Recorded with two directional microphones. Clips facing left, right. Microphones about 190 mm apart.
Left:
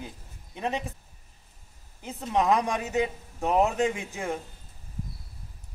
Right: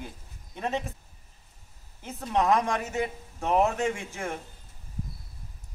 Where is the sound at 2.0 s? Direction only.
15° left (ahead or behind).